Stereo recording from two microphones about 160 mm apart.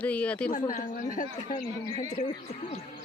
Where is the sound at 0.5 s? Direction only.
55° left (ahead or behind).